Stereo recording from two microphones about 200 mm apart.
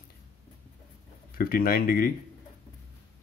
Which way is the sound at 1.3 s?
45° left (ahead or behind).